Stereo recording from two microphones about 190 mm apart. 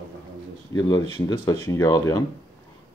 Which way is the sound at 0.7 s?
20° left (ahead or behind).